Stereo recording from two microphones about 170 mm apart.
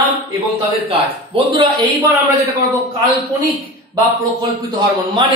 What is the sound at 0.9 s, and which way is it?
Speech, 30° right (ahead or behind).